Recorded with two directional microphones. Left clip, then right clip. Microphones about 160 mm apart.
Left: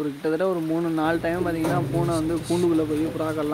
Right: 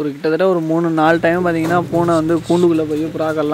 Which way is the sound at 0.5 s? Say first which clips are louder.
Right 9 dB; 35° right (ahead or behind).